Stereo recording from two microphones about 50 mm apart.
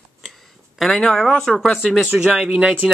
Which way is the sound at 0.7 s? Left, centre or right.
Centre.